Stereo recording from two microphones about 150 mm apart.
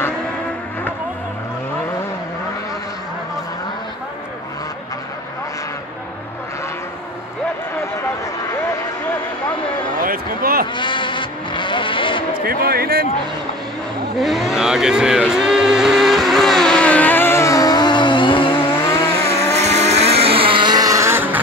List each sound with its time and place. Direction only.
9.9 s a sound: 75° right (ahead or behind)
10.7 s vehicle: 30° left (ahead or behind)
12.4 s a sound: 90° right
14.1 s vehicle: centre (ahead or behind); by 18.6 s 35° left (ahead or behind)
18.9 s vehicle: 20° left (ahead or behind)
19.5 s vehicle: 45° right (ahead or behind); by 21.4 s 15° right (ahead or behind)